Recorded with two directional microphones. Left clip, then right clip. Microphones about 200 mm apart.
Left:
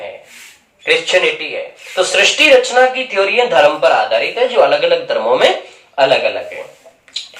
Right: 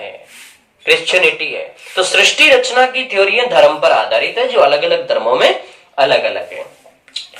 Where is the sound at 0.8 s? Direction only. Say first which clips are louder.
Right 1 dB; 20° right (ahead or behind).